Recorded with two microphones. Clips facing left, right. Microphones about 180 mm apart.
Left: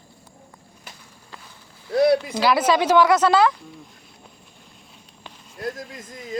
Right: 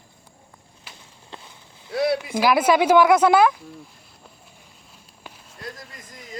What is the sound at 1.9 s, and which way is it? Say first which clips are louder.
Speech: left 5 dB; 45° left (ahead or behind).